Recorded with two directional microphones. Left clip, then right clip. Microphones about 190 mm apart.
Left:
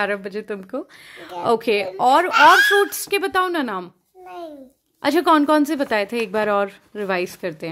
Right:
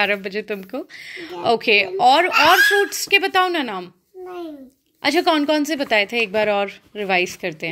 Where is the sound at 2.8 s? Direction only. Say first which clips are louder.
Right 3 dB; 25° left (ahead or behind).